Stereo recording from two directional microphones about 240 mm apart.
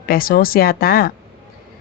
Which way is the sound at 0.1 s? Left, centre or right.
Left.